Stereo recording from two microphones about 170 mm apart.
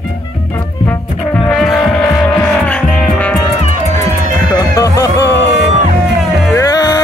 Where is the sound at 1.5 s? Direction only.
Centre (ahead or behind).